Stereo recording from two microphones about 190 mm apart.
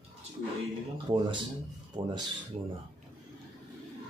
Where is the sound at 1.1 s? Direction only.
25° right (ahead or behind).